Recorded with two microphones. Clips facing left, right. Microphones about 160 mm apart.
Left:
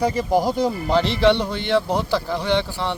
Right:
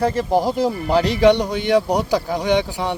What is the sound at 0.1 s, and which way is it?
Speech, centre (ahead or behind).